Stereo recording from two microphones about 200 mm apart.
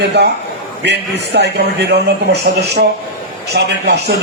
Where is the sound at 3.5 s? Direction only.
55° right (ahead or behind).